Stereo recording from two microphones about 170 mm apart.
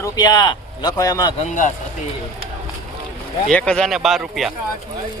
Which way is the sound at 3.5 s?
5° left (ahead or behind).